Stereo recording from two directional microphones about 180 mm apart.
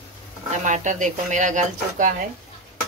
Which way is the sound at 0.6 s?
45° right (ahead or behind).